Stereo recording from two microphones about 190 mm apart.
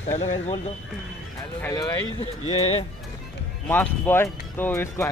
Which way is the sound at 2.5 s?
30° left (ahead or behind).